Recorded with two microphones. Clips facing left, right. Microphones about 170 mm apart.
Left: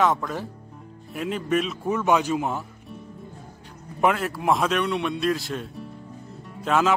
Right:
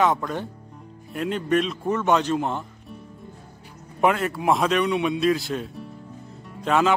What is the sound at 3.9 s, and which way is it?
Speech, centre (ahead or behind).